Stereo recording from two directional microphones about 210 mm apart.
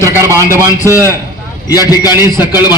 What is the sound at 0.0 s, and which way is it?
A man's voice, 15° right (ahead or behind).